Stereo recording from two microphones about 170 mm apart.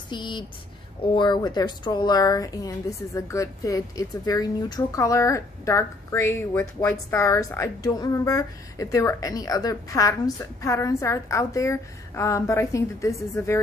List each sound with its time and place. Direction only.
0.1 s speech: 25° left (ahead or behind)